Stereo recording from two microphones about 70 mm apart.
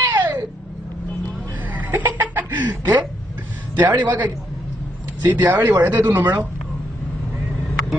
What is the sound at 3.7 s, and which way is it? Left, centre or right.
A man's voice, right.